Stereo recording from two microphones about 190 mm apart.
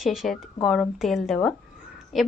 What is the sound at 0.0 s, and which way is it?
Speech, centre (ahead or behind).